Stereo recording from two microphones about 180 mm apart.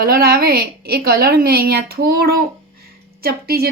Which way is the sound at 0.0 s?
55° right (ahead or behind).